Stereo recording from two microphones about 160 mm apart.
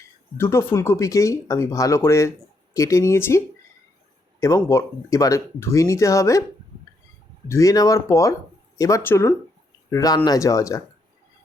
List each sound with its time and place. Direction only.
0.3 s speech: 15° left (ahead or behind)
7.4 s speech: 20° left (ahead or behind)